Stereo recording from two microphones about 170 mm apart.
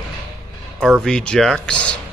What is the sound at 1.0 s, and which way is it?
Speech, 5° left (ahead or behind).